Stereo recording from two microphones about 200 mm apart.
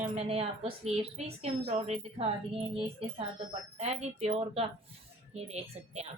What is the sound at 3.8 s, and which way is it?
A woman's voice, 30° right (ahead or behind).